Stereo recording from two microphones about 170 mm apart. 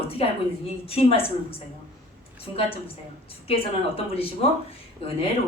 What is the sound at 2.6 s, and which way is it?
Speech, 35° left (ahead or behind).